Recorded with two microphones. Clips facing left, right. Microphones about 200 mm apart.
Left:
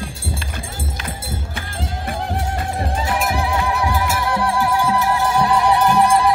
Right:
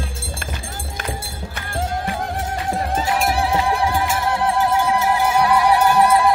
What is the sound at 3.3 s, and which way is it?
Music, 30° right (ahead or behind).